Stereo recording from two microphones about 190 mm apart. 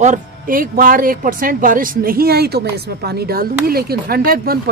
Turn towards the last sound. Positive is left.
turn(degrees=-50)  # may be behind; listen again after turning